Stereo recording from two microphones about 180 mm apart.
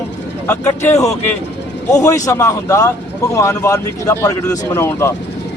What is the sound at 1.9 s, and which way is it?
Speech, 20° left (ahead or behind).